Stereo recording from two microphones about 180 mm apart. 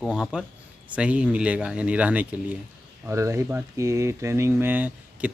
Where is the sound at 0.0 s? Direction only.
5° right (ahead or behind).